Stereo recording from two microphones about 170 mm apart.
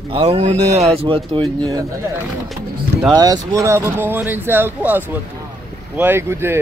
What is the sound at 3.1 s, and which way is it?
Speech, 25° right (ahead or behind).